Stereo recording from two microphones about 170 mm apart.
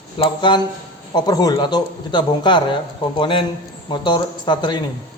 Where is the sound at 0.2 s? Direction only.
30° left (ahead or behind).